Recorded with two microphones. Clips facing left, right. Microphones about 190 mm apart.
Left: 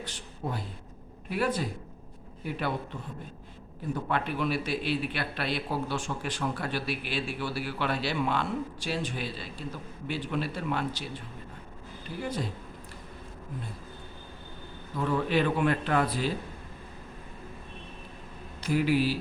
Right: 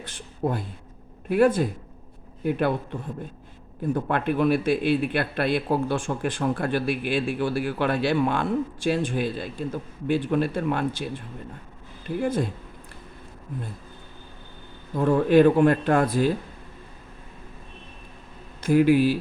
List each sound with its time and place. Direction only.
0.0 s a man's voice: 55° right (ahead or behind)
12.2 s a man's voice: 50° right (ahead or behind)
14.9 s a man's voice: 45° right (ahead or behind)
18.6 s a man's voice: 50° right (ahead or behind)